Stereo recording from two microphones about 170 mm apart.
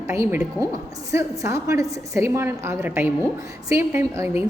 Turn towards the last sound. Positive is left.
turn(degrees=-15)  # may be behind; listen again after turning